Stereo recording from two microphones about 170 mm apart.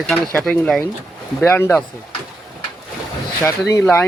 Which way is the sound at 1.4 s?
10° left (ahead or behind).